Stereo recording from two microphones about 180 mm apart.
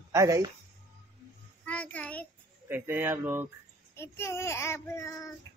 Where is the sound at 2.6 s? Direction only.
10° right (ahead or behind).